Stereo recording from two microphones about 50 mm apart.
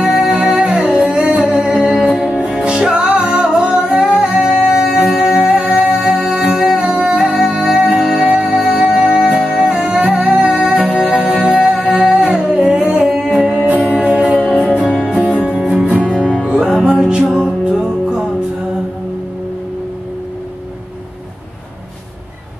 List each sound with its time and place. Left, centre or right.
0.0 s music: centre
10.1 s music: right
10.7 s music: centre
13.0 s humming: centre
13.8 s music: centre
15.5 s music: centre
15.8 s music: right